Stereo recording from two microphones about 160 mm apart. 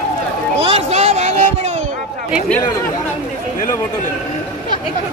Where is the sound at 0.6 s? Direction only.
40° right (ahead or behind).